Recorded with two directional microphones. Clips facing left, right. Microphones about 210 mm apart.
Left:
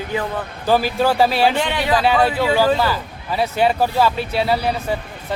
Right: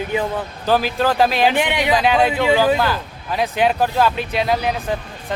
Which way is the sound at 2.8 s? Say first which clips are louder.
Even; 5° left (ahead or behind).